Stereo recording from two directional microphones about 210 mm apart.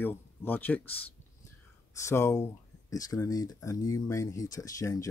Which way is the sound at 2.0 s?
15° left (ahead or behind).